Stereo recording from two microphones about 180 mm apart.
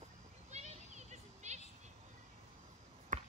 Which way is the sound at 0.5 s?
40° right (ahead or behind).